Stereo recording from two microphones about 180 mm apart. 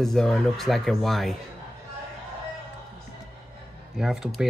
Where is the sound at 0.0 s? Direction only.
Centre (ahead or behind).